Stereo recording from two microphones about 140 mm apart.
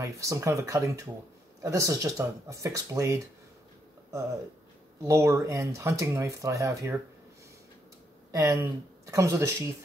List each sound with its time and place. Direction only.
0.0 s speech: 20° right (ahead or behind)
5.0 s speech: 20° right (ahead or behind)
8.3 s speech: 25° right (ahead or behind)